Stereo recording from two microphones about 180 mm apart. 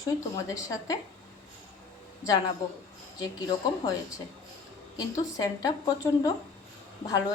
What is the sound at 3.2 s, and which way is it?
Speech, 25° left (ahead or behind).